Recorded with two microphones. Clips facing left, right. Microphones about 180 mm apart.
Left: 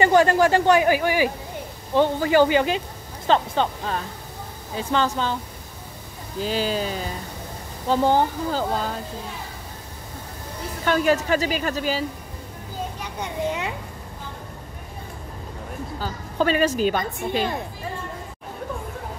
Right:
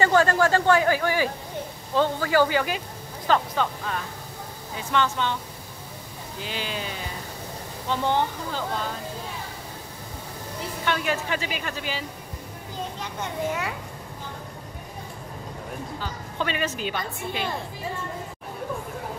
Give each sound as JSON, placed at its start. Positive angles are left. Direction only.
{"t": 0.0, "sound": "a woman's voice", "side_deg": 15}
{"t": 6.4, "sound": "a woman's voice", "side_deg": 40}
{"t": 10.9, "sound": "a woman's voice", "side_deg": 40}
{"t": 13.2, "sound": "speech", "side_deg": 20}
{"t": 16.0, "sound": "a woman's voice", "side_deg": 40}